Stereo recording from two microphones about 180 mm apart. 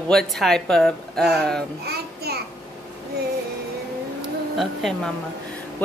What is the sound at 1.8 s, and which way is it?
Child singing, 60° right (ahead or behind).